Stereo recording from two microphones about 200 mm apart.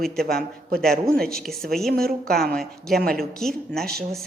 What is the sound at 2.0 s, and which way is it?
Speech, 50° right (ahead or behind).